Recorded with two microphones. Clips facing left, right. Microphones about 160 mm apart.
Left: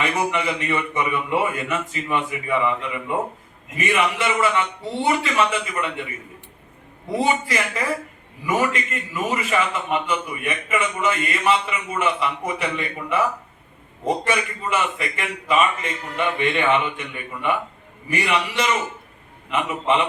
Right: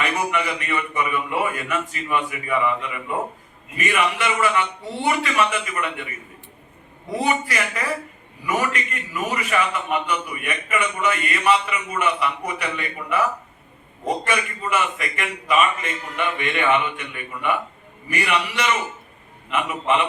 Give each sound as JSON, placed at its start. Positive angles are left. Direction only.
{"t": 0.0, "sound": "a man's voice", "side_deg": 25}
{"t": 7.2, "sound": "a man's voice", "side_deg": 25}
{"t": 18.1, "sound": "a man's voice", "side_deg": 30}